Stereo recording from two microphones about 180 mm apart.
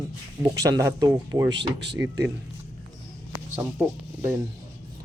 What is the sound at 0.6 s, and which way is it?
Speech, 15° right (ahead or behind).